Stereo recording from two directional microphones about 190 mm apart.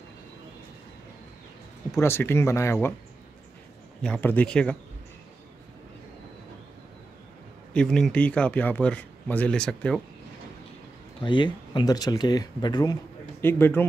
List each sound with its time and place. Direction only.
1.9 s speech: 15° left (ahead or behind)
4.0 s speech: 10° left (ahead or behind)
7.7 s speech: 5° left (ahead or behind)
11.2 s speech: 25° left (ahead or behind)